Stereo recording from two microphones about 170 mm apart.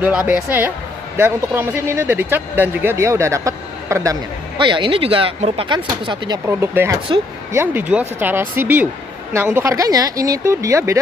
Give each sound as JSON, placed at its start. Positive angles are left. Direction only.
{"t": 0.0, "sound": "speech", "side_deg": -10}
{"t": 6.4, "sound": "speech", "side_deg": -15}